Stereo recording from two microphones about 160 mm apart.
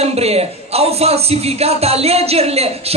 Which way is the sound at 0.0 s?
40° right (ahead or behind).